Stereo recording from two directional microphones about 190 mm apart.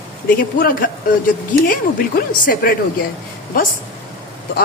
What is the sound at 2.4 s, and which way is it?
Speech, 50° left (ahead or behind).